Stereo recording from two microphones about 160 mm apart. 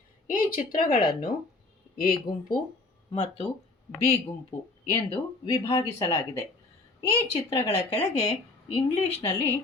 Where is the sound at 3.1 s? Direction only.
45° left (ahead or behind).